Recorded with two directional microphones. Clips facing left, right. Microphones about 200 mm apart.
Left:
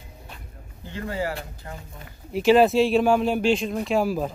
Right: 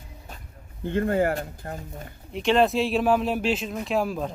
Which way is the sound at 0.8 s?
55° right (ahead or behind).